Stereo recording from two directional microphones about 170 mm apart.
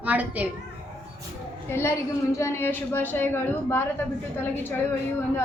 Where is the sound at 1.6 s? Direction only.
15° left (ahead or behind).